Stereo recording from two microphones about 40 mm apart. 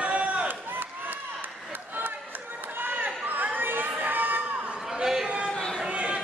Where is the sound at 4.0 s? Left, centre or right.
Right.